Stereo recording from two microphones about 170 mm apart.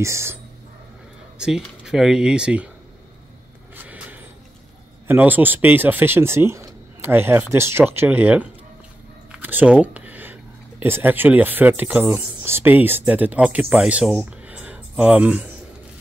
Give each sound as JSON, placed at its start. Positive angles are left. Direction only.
{"t": 0.0, "sound": "speech", "side_deg": -15}
{"t": 1.4, "sound": "speech", "side_deg": -5}
{"t": 3.7, "sound": "a sound", "side_deg": -10}
{"t": 5.0, "sound": "speech", "side_deg": -10}